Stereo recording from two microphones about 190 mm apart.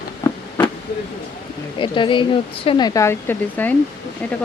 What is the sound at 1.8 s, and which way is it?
Speech, 25° left (ahead or behind).